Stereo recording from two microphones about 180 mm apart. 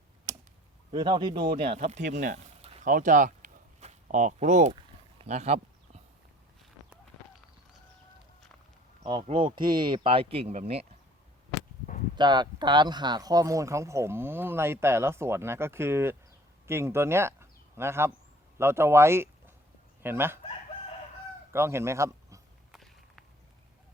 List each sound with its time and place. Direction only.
0.9 s speech: 25° right (ahead or behind)
2.1 s a sound: 45° right (ahead or behind)
9.2 s speech: 25° right (ahead or behind)
12.1 s speech: 25° right (ahead or behind)
21.5 s speech: 15° right (ahead or behind)
22.7 s walk: centre (ahead or behind)